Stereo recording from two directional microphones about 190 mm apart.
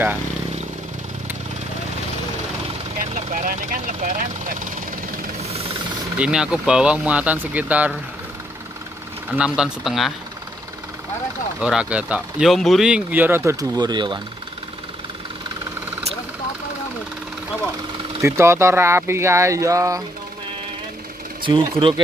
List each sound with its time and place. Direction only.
3.0 s speech: 45° right (ahead or behind)
5.4 s vehicle: 35° right (ahead or behind)
6.1 s speech: 5° right (ahead or behind)
9.3 s speech: 5° right (ahead or behind)
11.6 s speech: 5° right (ahead or behind); by 14.2 s 25° right (ahead or behind)
18.2 s speech: 15° right (ahead or behind)
21.4 s speech: 25° right (ahead or behind)